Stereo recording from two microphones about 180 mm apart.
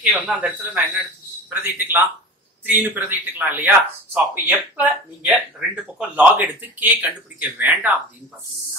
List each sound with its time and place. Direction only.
0.0 s speech: 10° right (ahead or behind)